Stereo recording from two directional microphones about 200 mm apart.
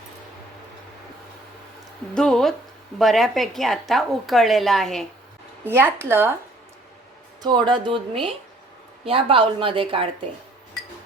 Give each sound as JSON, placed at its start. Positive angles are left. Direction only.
{"t": 2.1, "sound": "a woman's voice", "side_deg": 0}
{"t": 5.6, "sound": "speech", "side_deg": -10}
{"t": 7.4, "sound": "a woman's voice", "side_deg": -20}